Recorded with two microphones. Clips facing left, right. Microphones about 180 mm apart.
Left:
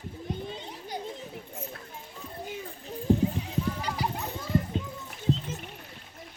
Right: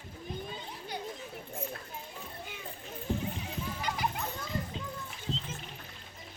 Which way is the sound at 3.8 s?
35° left (ahead or behind).